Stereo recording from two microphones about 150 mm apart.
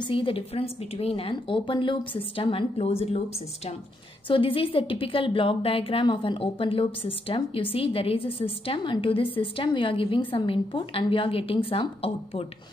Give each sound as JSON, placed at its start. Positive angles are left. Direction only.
{"t": 0.0, "sound": "a woman's voice", "side_deg": 35}
{"t": 4.3, "sound": "a woman's voice", "side_deg": 35}